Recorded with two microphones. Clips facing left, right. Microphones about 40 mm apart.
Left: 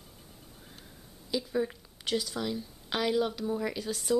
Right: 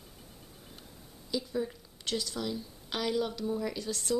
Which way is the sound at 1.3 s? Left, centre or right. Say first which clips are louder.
Left 3 dB; centre.